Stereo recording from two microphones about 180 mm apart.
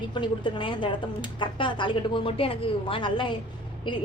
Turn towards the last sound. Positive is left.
turn(degrees=25)  # may be behind; listen again after turning